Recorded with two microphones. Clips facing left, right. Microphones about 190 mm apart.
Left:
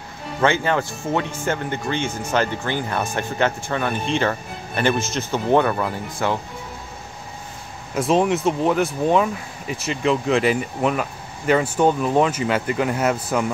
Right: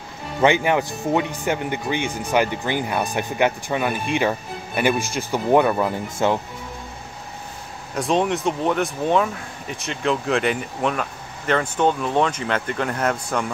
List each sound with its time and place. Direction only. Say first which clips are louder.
0.4 s speech: right 2 dB; 15° right (ahead or behind)
7.9 s speech: left 2 dB; 5° left (ahead or behind)